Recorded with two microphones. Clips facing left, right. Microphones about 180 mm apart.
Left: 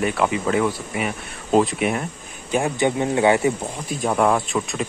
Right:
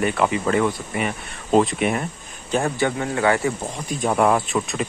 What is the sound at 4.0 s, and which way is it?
Speech, centre (ahead or behind).